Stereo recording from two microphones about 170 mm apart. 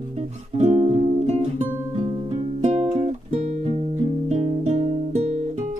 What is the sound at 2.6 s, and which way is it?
Music, 35° right (ahead or behind).